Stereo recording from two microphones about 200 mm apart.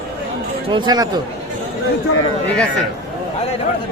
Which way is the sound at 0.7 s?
20° right (ahead or behind).